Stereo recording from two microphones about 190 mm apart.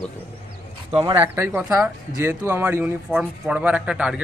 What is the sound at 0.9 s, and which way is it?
Speech, 25° right (ahead or behind).